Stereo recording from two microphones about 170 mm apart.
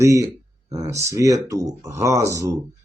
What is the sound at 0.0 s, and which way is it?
A man's voice, 20° right (ahead or behind).